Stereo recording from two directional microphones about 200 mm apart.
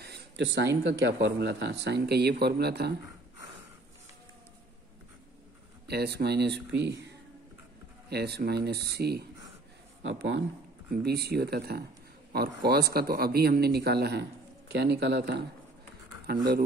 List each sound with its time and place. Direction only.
0.0 s speech: 55° right (ahead or behind)
5.9 s speech: 55° right (ahead or behind)
8.1 s speech: 55° right (ahead or behind)